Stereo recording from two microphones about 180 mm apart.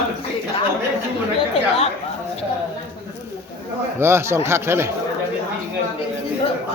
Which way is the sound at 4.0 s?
15° right (ahead or behind).